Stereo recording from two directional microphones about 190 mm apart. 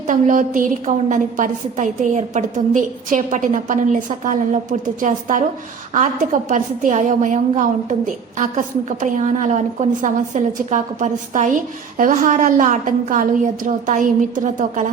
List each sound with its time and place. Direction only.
0.1 s a woman's voice: 45° right (ahead or behind)
6.5 s a woman's voice: 40° right (ahead or behind)